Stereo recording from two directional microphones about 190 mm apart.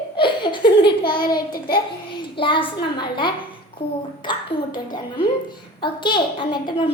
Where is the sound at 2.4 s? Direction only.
25° left (ahead or behind).